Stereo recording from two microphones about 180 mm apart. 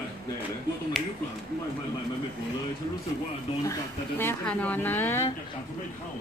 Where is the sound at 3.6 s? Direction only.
15° left (ahead or behind).